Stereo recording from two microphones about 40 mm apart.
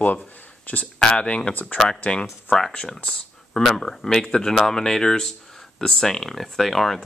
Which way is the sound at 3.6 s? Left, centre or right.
Centre.